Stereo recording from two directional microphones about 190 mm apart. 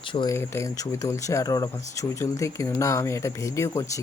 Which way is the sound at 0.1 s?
25° left (ahead or behind).